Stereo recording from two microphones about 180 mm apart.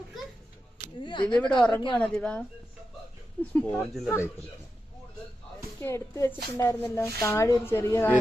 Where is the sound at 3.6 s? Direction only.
10° left (ahead or behind).